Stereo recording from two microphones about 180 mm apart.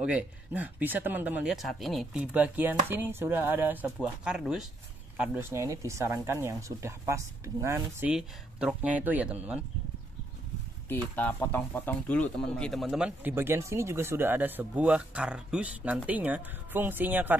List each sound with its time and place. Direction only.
0.0 s speech: 5° right (ahead or behind)
8.1 s speech: 5° right (ahead or behind)
10.9 s speech: 10° left (ahead or behind); by 17.4 s 10° right (ahead or behind)